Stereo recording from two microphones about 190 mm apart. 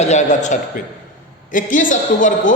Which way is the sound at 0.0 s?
35° left (ahead or behind).